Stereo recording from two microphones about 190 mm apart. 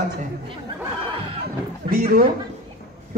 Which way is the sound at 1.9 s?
50° right (ahead or behind).